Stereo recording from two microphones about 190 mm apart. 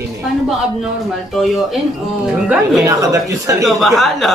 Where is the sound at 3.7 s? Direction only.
Centre (ahead or behind).